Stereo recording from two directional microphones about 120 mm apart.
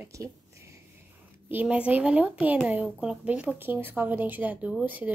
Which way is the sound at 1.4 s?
15° right (ahead or behind).